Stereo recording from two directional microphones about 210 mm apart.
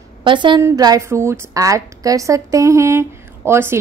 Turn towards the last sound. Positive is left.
turn(degrees=-10)  # may be behind; listen again after turning